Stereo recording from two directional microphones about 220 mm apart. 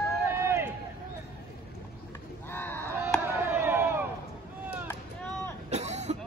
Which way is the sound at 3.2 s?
10° right (ahead or behind).